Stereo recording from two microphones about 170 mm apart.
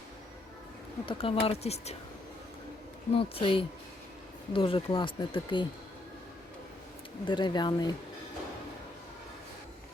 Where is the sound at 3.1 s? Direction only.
30° left (ahead or behind).